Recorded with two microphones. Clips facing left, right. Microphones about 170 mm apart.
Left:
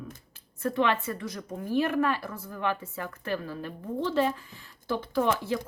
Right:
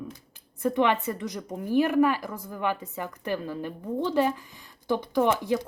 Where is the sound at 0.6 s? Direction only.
15° right (ahead or behind).